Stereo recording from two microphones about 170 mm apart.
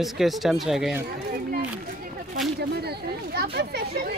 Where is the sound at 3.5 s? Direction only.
70° right (ahead or behind).